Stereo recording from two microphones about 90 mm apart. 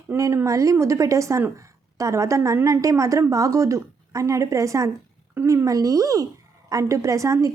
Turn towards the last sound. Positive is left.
turn(degrees=-35)  # may be behind; listen again after turning